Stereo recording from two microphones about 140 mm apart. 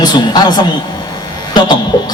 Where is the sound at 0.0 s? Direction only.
30° left (ahead or behind).